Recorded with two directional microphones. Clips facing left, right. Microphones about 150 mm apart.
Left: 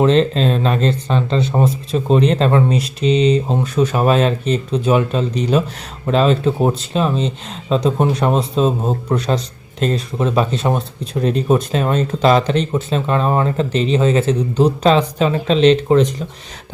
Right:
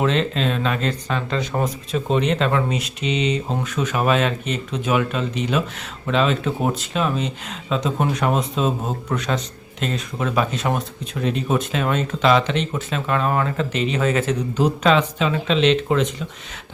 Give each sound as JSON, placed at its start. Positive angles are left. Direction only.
{"t": 0.0, "sound": "speech", "side_deg": 35}